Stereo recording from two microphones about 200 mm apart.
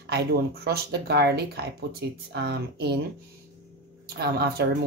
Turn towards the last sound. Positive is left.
turn(degrees=-55)  # may be behind; listen again after turning